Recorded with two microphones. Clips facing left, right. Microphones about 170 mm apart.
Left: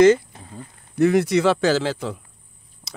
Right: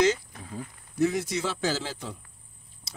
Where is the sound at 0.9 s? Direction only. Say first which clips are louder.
Left 9 dB; 65° left (ahead or behind).